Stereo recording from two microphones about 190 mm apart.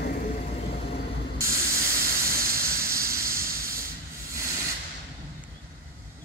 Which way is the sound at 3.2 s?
50° right (ahead or behind).